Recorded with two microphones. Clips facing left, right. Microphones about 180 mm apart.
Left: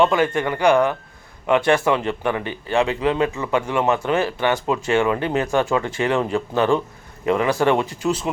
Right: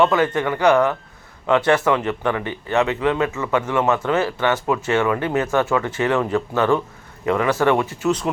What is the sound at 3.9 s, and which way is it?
A man's voice, 15° left (ahead or behind).